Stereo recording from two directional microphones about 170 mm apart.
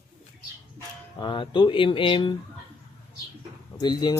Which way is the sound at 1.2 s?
30° left (ahead or behind).